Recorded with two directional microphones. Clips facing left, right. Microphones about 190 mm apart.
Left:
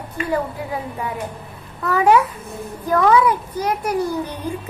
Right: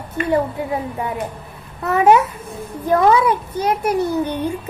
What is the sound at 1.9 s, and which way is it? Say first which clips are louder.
A child's voice: right 2 dB; 25° right (ahead or behind).